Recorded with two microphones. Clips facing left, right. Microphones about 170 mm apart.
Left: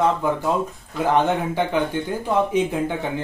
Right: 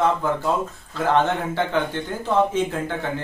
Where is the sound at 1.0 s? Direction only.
15° left (ahead or behind).